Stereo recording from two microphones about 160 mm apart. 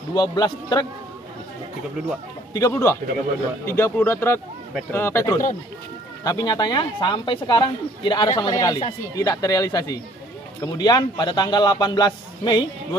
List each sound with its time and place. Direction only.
0.1 s speech: 25° left (ahead or behind)
2.5 s speech: 20° left (ahead or behind)